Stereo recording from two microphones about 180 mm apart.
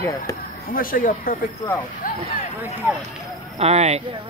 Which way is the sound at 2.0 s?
55° left (ahead or behind).